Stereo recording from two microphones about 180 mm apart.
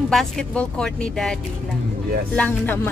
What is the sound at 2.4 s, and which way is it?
Music, 10° left (ahead or behind).